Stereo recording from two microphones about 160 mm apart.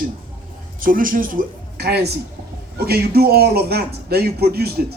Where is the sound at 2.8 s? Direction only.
75° right (ahead or behind).